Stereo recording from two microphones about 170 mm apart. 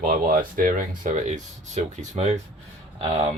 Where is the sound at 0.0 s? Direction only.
55° right (ahead or behind); by 3.3 s 35° right (ahead or behind).